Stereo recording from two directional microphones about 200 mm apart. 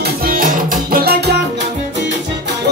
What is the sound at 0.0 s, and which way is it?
Music, 45° right (ahead or behind).